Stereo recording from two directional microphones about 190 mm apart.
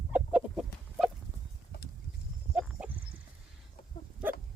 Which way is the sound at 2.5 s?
5° right (ahead or behind).